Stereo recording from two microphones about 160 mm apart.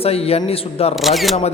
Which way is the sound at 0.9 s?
Centre (ahead or behind).